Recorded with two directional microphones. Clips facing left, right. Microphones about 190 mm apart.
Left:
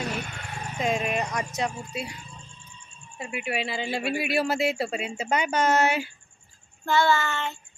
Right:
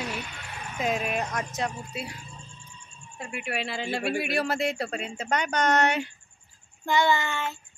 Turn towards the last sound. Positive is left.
turn(degrees=-15)  # may be behind; listen again after turning